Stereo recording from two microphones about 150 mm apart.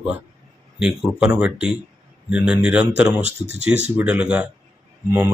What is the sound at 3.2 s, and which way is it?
Speech, 50° right (ahead or behind).